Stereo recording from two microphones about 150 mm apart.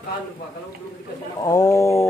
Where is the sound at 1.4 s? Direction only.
20° left (ahead or behind).